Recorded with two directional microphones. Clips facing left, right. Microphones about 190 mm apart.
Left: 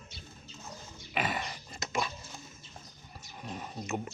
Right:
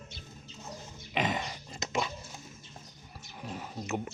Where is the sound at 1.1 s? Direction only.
20° right (ahead or behind).